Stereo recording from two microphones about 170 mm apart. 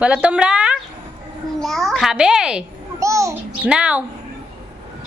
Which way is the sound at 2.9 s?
20° right (ahead or behind).